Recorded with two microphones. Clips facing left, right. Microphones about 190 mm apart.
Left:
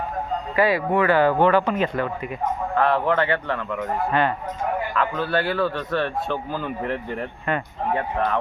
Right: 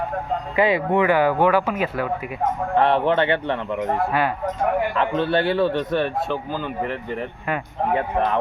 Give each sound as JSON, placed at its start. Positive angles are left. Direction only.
{"t": 0.5, "sound": "speech", "side_deg": -20}
{"t": 2.7, "sound": "speech", "side_deg": -25}
{"t": 4.9, "sound": "speech", "side_deg": -25}
{"t": 6.2, "sound": "speech", "side_deg": -5}